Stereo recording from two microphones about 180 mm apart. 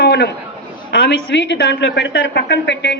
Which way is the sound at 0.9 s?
75° left (ahead or behind).